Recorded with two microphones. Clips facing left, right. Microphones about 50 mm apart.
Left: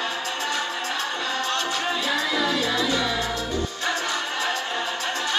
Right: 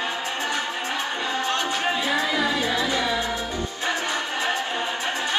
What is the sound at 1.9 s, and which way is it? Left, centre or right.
Music, right.